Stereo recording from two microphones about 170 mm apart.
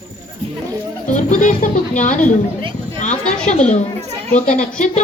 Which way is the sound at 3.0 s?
45° left (ahead or behind).